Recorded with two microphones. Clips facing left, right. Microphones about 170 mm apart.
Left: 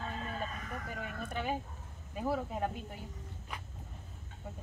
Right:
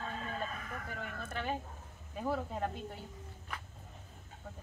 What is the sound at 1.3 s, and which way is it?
Speech, 10° left (ahead or behind).